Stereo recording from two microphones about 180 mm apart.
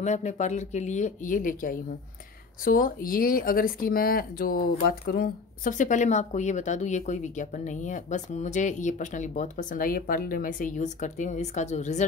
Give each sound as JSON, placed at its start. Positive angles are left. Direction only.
{"t": 0.0, "sound": "speech", "side_deg": 40}